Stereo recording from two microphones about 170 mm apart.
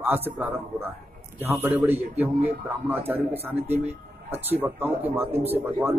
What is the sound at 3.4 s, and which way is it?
A man's voice, 10° right (ahead or behind).